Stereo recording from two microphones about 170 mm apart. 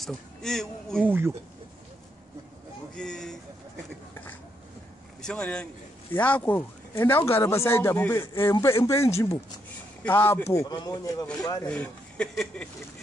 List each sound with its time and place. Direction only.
0.0 s speech: 5° left (ahead or behind)
1.0 s speech: 15° right (ahead or behind)
2.9 s speech: 5° left (ahead or behind); by 11.2 s 25° left (ahead or behind)
11.6 s speech: 5° left (ahead or behind)